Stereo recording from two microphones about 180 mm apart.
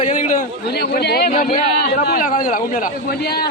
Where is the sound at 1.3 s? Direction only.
50° left (ahead or behind).